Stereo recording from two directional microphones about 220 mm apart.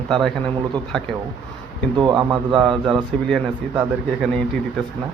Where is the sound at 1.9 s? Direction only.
20° right (ahead or behind).